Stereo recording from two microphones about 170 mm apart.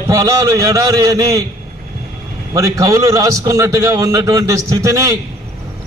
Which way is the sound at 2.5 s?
20° right (ahead or behind).